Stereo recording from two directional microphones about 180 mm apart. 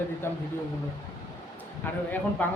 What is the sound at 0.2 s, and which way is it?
Speech, 15° left (ahead or behind).